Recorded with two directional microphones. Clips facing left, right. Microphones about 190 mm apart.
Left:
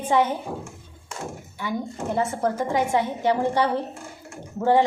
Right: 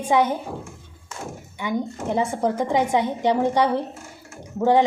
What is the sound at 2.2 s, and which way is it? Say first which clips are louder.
A woman's voice: right 2 dB; 15° right (ahead or behind).